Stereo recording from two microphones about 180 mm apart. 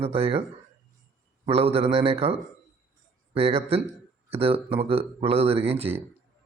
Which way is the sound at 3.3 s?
35° right (ahead or behind).